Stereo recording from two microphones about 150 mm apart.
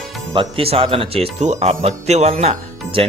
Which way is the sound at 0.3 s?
40° right (ahead or behind).